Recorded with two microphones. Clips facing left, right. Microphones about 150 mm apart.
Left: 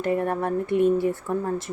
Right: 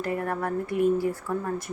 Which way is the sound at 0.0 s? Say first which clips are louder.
Left 4 dB; 25° left (ahead or behind).